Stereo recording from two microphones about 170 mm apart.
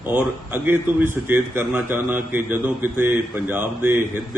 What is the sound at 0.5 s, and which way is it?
A man's voice, 15° right (ahead or behind).